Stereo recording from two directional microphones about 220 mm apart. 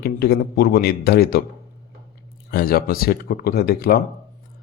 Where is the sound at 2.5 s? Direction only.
40° left (ahead or behind).